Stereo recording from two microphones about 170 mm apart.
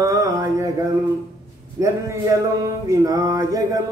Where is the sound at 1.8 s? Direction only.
20° right (ahead or behind).